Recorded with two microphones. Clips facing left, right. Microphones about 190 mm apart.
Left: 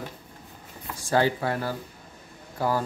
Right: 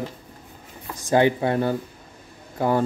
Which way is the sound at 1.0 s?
20° right (ahead or behind).